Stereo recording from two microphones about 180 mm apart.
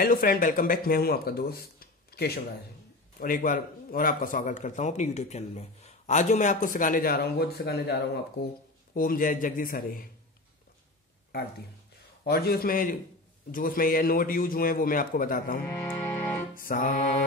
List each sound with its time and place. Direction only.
0.0 s a man's voice: 55° left (ahead or behind)
12.3 s a man's voice: 60° left (ahead or behind)
15.6 s music: 15° left (ahead or behind)
16.5 s a man's voice: 50° left (ahead or behind)